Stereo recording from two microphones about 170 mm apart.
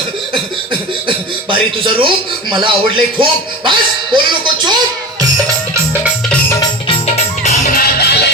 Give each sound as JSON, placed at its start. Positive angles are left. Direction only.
{"t": 0.7, "sound": "speech", "side_deg": -30}
{"t": 6.5, "sound": "music", "side_deg": 20}
{"t": 7.2, "sound": "music", "side_deg": 45}